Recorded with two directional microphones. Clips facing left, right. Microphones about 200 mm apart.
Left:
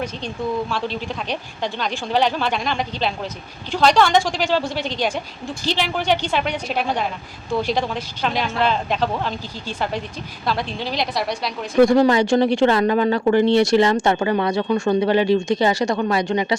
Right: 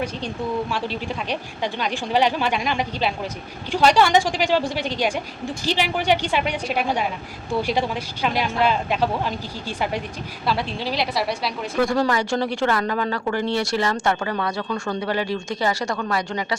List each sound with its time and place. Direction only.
0.7 s a woman's voice: 10° right (ahead or behind)
11.8 s speech: 20° left (ahead or behind)